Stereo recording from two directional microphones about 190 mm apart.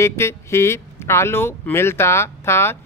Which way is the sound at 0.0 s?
15° left (ahead or behind).